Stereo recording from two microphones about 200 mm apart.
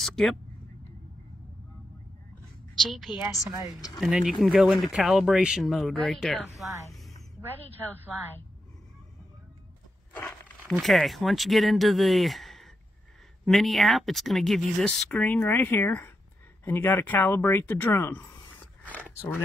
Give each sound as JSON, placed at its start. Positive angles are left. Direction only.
{"t": 0.0, "sound": "a sound", "side_deg": 0}
{"t": 2.7, "sound": "a woman's voice", "side_deg": 0}
{"t": 3.4, "sound": "speech", "side_deg": -15}
{"t": 4.0, "sound": "speech", "side_deg": 0}
{"t": 10.7, "sound": "speech", "side_deg": 0}